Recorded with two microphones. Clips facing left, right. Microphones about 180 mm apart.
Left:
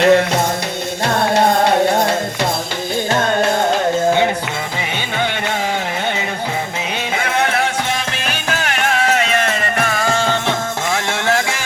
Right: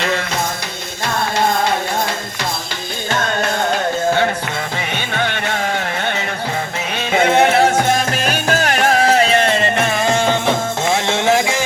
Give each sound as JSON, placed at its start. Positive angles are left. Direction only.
{"t": 0.0, "sound": "music", "side_deg": 55}
{"t": 3.1, "sound": "music", "side_deg": 30}
{"t": 5.1, "sound": "carnatic music", "side_deg": 15}
{"t": 7.2, "sound": "music", "side_deg": -25}
{"t": 7.6, "sound": "music", "side_deg": -45}